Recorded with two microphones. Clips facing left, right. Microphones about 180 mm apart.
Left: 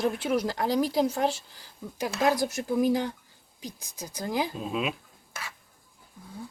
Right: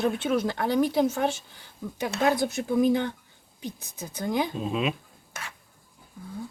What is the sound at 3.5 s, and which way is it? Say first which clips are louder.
Speech: right 4 dB; 60° right (ahead or behind).